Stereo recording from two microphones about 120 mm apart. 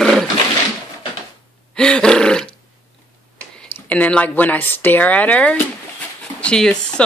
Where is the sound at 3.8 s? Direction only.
10° left (ahead or behind).